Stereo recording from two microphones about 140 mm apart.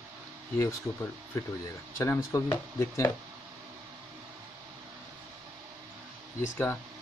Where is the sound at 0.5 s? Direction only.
20° left (ahead or behind).